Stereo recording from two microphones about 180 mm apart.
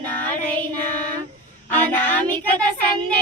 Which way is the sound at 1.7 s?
10° left (ahead or behind).